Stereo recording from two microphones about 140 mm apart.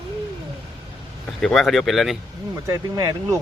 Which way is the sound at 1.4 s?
Centre (ahead or behind).